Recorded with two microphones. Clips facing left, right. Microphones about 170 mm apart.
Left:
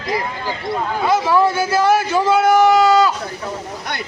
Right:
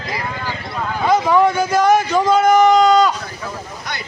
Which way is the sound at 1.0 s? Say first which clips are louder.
Right 2 dB; 5° left (ahead or behind).